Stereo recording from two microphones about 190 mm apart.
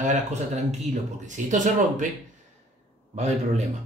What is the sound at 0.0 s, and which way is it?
Speech, 40° right (ahead or behind).